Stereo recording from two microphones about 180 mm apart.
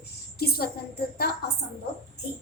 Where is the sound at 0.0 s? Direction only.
60° left (ahead or behind).